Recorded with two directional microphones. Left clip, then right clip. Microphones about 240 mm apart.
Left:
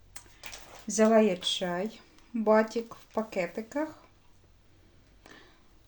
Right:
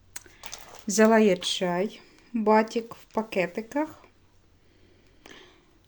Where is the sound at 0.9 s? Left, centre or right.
Right.